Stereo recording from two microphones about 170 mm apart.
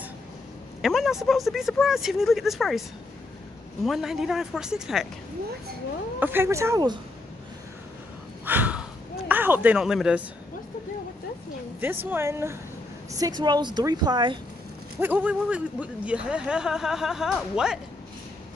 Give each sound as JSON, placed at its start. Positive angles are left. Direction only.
{"t": 0.8, "sound": "speech", "side_deg": 0}
{"t": 3.8, "sound": "speech", "side_deg": 0}
{"t": 6.1, "sound": "speech", "side_deg": -10}
{"t": 8.5, "sound": "a sound", "side_deg": -10}
{"t": 9.3, "sound": "speech", "side_deg": -10}
{"t": 11.8, "sound": "speech", "side_deg": -10}
{"t": 13.4, "sound": "speech", "side_deg": -25}
{"t": 15.0, "sound": "speech", "side_deg": -10}